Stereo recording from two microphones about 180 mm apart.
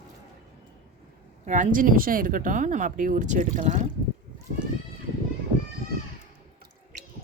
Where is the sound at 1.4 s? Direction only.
45° right (ahead or behind).